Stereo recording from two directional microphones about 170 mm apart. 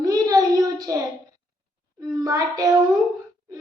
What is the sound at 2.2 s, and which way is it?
Child singing, 20° right (ahead or behind).